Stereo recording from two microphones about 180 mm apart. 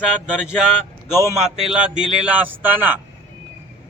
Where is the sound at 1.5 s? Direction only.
5° right (ahead or behind).